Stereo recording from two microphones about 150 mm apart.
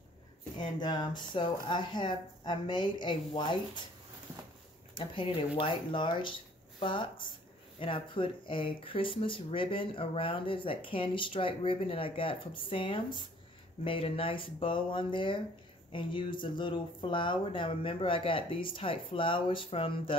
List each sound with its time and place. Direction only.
0.6 s speech: 30° left (ahead or behind)
4.9 s speech: 35° left (ahead or behind)